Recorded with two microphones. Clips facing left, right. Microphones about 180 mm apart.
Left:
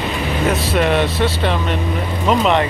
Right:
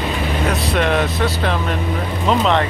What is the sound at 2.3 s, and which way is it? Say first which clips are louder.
Speech: left 1 dB; 10° left (ahead or behind).